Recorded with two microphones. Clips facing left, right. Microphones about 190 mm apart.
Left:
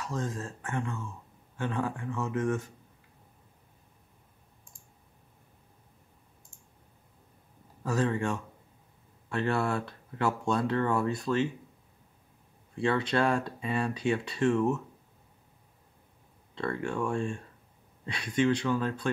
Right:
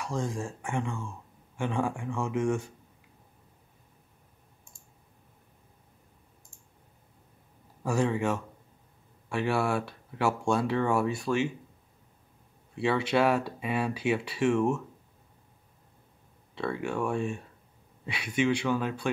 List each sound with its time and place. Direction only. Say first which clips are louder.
0.0 s speech: right 2 dB; 15° right (ahead or behind)
7.8 s speech: right 2 dB; 10° right (ahead or behind)
12.7 s speech: right 1 dB; 10° right (ahead or behind)
16.5 s speech: right 1 dB; 5° right (ahead or behind)